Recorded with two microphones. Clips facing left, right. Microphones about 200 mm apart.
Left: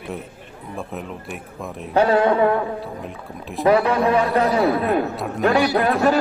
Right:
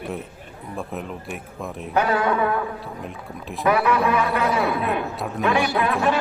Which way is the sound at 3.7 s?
30° left (ahead or behind).